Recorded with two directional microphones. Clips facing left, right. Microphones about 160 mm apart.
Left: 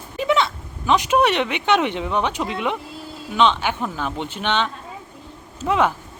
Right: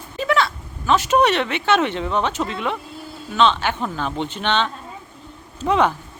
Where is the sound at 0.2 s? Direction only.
20° left (ahead or behind).